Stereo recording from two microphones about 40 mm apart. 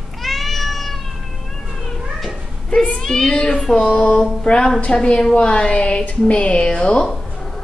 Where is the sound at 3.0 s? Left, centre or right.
Centre.